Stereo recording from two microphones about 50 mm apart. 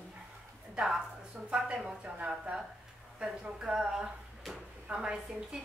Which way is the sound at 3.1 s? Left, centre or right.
Centre.